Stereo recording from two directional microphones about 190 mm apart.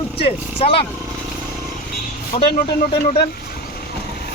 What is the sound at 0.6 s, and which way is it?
Speech, 30° left (ahead or behind).